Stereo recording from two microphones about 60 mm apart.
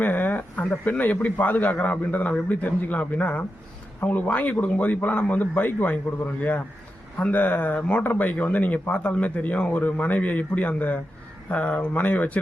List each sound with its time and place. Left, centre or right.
0.0 s speech: left